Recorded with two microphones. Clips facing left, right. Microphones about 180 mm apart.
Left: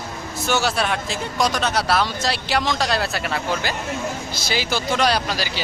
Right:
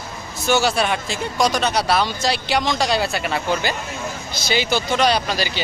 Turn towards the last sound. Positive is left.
turn(degrees=5)  # may be behind; listen again after turning